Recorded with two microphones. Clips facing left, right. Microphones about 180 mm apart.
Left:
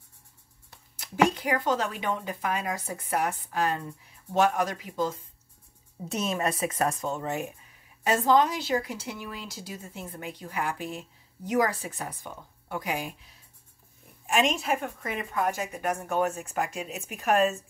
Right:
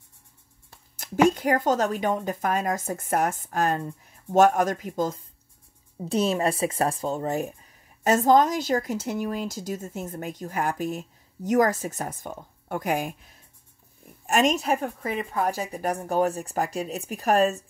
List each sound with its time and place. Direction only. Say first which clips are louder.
0.9 s speech: right 4 dB; 45° right (ahead or behind)
6.0 s a woman's voice: right 5 dB; 30° right (ahead or behind)